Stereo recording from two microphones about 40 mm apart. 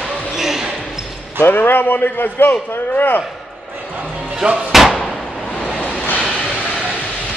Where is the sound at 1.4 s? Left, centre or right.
Left.